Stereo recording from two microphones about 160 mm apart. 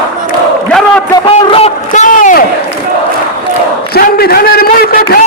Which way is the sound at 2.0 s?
55° left (ahead or behind).